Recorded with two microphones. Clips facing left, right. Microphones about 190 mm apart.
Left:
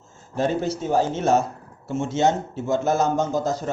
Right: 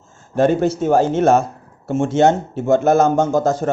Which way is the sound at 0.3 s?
65° right (ahead or behind).